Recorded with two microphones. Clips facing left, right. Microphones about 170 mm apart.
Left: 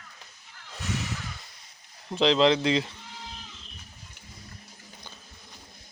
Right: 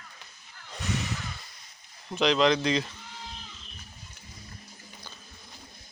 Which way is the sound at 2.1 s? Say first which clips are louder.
Left 2 dB; 25° left (ahead or behind).